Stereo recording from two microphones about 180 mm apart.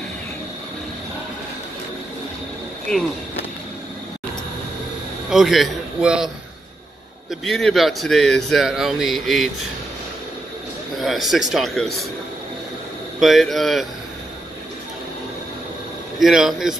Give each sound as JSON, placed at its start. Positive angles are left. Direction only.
{"t": 2.9, "sound": "a man's voice", "side_deg": 5}
{"t": 5.3, "sound": "a man's voice", "side_deg": 0}
{"t": 11.0, "sound": "a man's voice", "side_deg": 0}
{"t": 13.2, "sound": "a man's voice", "side_deg": 0}
{"t": 16.2, "sound": "a man's voice", "side_deg": 0}